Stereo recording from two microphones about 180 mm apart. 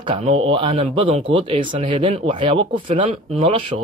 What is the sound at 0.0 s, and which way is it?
Speech, 30° right (ahead or behind).